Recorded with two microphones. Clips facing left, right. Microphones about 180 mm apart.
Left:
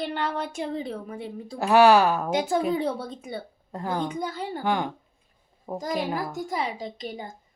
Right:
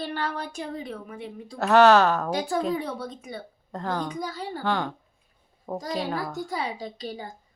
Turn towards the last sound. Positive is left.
turn(degrees=20)  # may be behind; listen again after turning